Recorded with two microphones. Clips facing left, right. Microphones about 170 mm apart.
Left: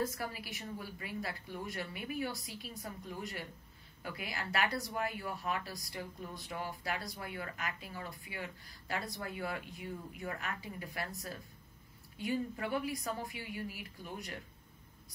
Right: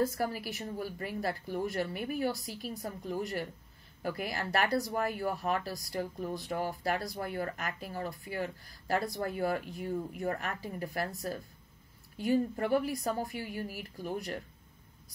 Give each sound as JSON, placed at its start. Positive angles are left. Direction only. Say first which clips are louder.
{"t": 0.0, "sound": "speech", "louder": "right 7 dB", "side_deg": -45}